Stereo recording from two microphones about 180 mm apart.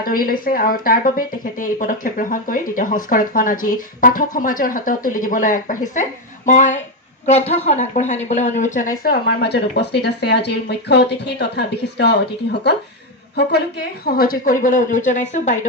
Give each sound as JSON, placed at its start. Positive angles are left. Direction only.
{"t": 0.0, "sound": "speech", "side_deg": 55}